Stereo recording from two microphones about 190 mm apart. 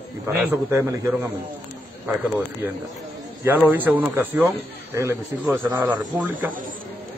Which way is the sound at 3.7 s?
10° right (ahead or behind).